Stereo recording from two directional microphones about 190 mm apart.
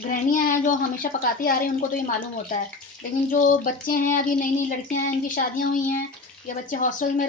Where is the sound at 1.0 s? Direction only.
50° left (ahead or behind).